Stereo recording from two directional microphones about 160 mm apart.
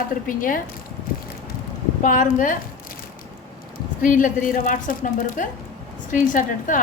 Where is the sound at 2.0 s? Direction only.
55° left (ahead or behind).